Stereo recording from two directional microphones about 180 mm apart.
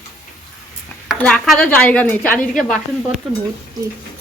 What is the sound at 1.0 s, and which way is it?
Speech, centre (ahead or behind).